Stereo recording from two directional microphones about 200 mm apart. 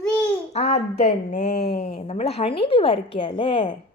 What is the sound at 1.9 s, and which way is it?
A woman's voice, 35° left (ahead or behind).